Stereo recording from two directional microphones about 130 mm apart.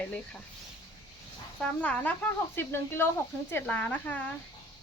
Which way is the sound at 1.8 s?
10° left (ahead or behind).